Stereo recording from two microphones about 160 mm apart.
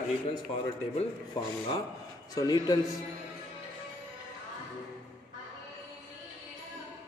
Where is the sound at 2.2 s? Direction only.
25° left (ahead or behind).